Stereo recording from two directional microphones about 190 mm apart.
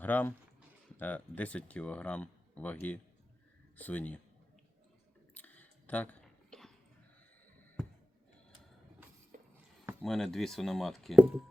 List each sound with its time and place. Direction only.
0.0 s speech: 10° left (ahead or behind)
5.3 s chewing: 10° left (ahead or behind)
9.3 s music: 45° right (ahead or behind)
10.0 s speech: centre (ahead or behind)